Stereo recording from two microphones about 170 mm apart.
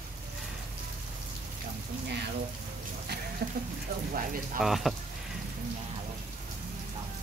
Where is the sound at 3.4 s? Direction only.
65° right (ahead or behind).